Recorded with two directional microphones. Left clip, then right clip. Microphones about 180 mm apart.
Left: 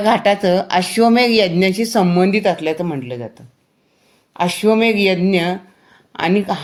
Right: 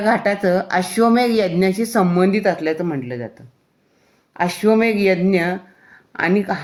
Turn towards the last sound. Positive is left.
turn(degrees=65)  # may be behind; listen again after turning